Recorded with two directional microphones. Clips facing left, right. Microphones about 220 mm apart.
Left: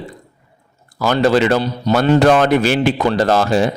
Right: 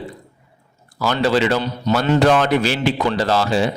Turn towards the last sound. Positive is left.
turn(degrees=50)  # may be behind; listen again after turning